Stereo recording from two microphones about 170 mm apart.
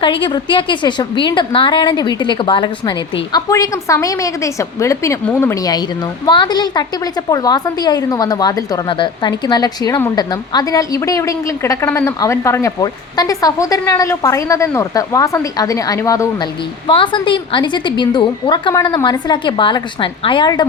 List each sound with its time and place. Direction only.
0.0 s a woman's voice: 30° left (ahead or behind)